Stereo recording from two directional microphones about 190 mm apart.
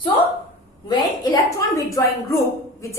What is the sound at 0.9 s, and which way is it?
A woman's voice, 20° left (ahead or behind).